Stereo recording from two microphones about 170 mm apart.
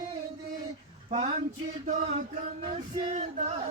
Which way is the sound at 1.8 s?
45° right (ahead or behind).